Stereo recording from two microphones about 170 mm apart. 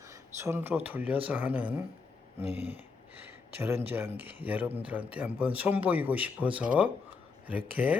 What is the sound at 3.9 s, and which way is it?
Speech, 10° right (ahead or behind).